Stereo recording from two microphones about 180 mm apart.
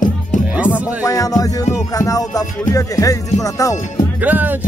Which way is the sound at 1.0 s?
20° left (ahead or behind).